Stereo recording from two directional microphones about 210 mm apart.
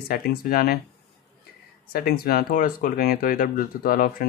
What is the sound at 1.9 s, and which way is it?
Speech, 45° left (ahead or behind).